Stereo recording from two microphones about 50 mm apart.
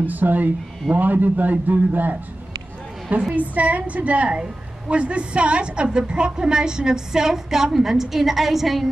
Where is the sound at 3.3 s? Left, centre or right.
Right.